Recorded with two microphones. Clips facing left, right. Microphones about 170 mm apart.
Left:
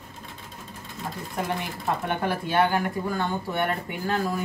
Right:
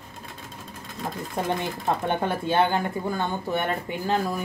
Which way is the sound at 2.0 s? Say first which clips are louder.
Right 2 dB; 25° right (ahead or behind).